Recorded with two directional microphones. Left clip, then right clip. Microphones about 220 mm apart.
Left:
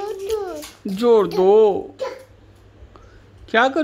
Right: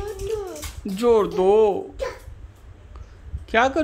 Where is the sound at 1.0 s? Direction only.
Centre (ahead or behind).